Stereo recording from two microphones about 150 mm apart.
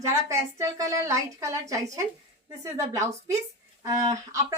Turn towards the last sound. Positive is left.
turn(degrees=-20)  # may be behind; listen again after turning